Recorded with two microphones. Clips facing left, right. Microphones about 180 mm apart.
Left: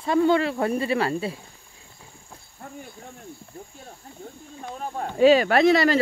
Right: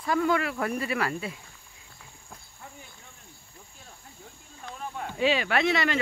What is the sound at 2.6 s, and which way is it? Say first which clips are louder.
Cricket: left 8 dB; 45° left (ahead or behind).